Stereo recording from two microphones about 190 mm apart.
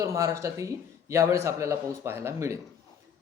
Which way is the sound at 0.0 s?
15° right (ahead or behind).